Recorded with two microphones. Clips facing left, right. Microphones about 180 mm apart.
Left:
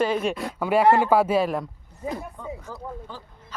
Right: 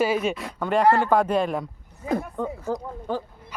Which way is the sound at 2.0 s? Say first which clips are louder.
Right 5 dB; 60° right (ahead or behind).